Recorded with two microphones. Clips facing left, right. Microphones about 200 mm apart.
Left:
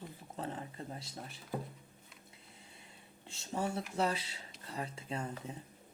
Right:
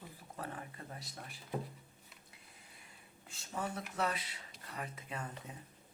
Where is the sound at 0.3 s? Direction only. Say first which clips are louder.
Left 4 dB; 25° left (ahead or behind).